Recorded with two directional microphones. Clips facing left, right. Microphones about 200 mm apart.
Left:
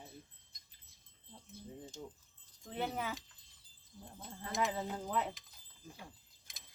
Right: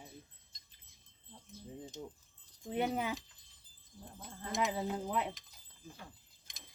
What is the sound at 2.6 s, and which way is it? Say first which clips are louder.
Speech: right 4 dB; 15° right (ahead or behind).